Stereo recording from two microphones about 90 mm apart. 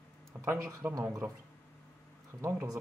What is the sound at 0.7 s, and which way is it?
Speech, 30° right (ahead or behind).